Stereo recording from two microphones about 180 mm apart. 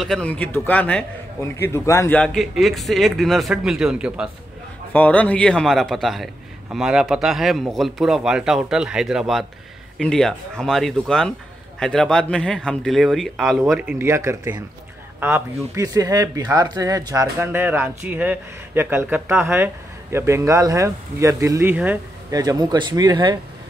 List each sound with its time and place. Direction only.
0.0 s a man's voice: 5° left (ahead or behind)
4.9 s a man's voice: 10° left (ahead or behind); by 22.4 s 10° right (ahead or behind)
22.4 s speech: 20° right (ahead or behind)